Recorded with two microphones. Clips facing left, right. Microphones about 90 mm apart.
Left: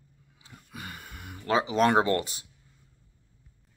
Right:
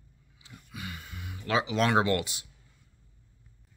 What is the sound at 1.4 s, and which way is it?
Speech, 40° left (ahead or behind).